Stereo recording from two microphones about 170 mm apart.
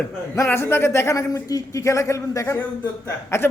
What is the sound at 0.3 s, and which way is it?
Speech, 15° left (ahead or behind).